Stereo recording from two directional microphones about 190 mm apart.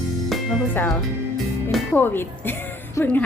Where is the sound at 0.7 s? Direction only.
10° left (ahead or behind).